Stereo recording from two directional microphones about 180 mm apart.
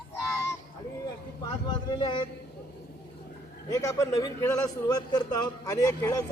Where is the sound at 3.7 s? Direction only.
20° left (ahead or behind).